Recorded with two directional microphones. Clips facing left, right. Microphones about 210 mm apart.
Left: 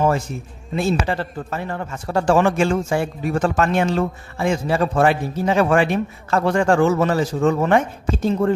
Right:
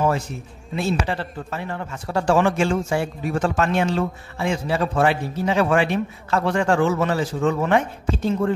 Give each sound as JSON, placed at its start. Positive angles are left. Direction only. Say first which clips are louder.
{"t": 0.7, "sound": "speech", "louder": "left 3 dB", "side_deg": 45}